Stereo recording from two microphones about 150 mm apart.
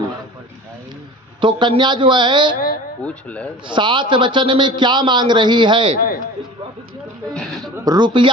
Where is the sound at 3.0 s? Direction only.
10° left (ahead or behind).